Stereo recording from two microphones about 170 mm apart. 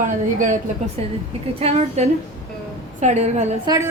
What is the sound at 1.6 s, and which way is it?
A woman's voice, 40° right (ahead or behind).